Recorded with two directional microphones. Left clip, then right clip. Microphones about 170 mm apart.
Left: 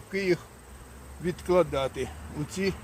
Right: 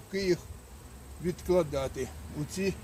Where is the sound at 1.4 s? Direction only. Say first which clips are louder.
Left 4 dB; 20° left (ahead or behind).